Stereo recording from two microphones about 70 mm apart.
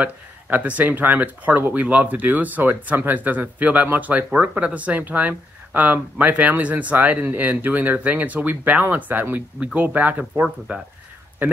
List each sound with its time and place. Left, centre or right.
0.0 s speech: right